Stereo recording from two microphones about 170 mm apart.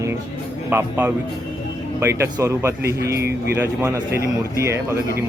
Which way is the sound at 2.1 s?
15° right (ahead or behind).